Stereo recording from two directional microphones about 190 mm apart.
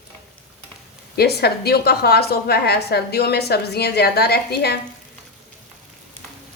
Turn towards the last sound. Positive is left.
turn(degrees=60)  # may be behind; listen again after turning